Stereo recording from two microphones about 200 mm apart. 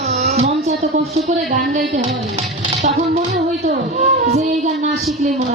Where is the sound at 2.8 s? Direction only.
35° right (ahead or behind).